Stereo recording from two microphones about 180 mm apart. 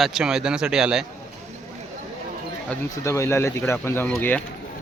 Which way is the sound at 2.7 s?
15° left (ahead or behind).